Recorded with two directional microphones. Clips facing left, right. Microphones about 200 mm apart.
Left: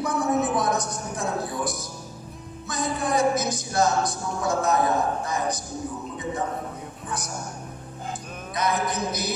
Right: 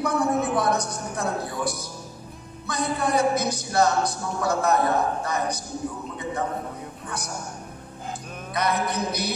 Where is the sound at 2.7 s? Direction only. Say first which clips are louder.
Right 1 dB; 65° right (ahead or behind).